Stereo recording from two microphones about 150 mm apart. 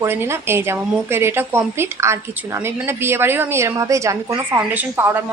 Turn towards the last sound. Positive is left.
turn(degrees=-15)  # may be behind; listen again after turning